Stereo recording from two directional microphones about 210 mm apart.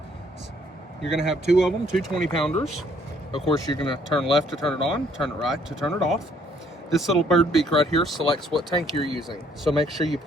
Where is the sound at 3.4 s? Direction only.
25° left (ahead or behind).